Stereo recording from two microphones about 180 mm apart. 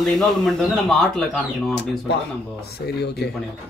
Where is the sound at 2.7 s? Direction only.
65° left (ahead or behind).